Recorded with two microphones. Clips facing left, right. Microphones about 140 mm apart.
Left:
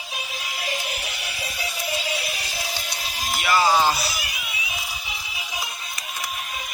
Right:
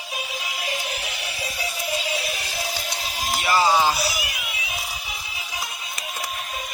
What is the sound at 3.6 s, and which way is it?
Music, 10° right (ahead or behind).